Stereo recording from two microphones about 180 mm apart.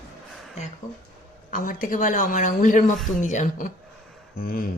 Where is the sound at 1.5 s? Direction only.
50° left (ahead or behind).